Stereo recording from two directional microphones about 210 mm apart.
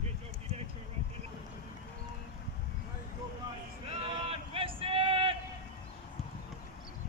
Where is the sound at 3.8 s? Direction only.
30° right (ahead or behind).